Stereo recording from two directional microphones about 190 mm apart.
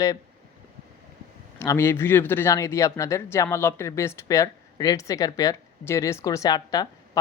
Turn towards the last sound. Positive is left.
turn(degrees=20)  # may be behind; listen again after turning